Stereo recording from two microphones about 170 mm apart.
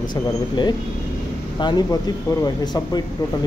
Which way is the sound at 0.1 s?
25° left (ahead or behind).